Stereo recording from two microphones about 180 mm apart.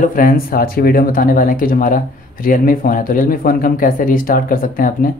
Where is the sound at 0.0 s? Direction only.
50° left (ahead or behind).